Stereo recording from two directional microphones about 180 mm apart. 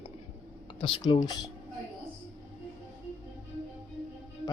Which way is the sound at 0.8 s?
30° left (ahead or behind).